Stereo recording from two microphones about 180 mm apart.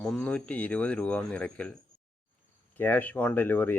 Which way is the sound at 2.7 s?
10° left (ahead or behind).